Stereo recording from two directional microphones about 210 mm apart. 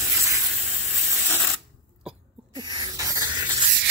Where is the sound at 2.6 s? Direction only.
20° right (ahead or behind).